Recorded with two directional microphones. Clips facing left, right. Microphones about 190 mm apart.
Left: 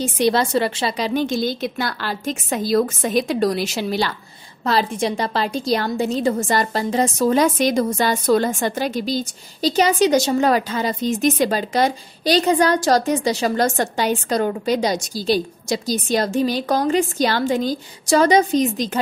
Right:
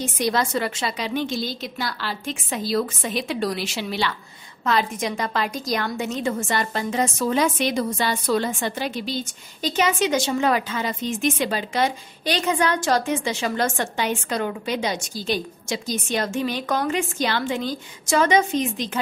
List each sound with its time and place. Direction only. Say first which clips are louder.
0.0 s a woman's voice: left 5 dB; 30° left (ahead or behind)